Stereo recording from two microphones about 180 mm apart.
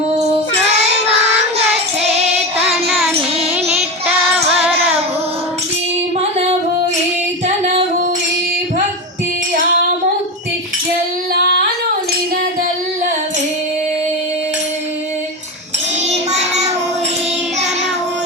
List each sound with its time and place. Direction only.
0.1 s child singing: 35° right (ahead or behind)
3.1 s child singing: 10° right (ahead or behind)
6.1 s music: 35° right (ahead or behind)
16.0 s child singing: 35° right (ahead or behind)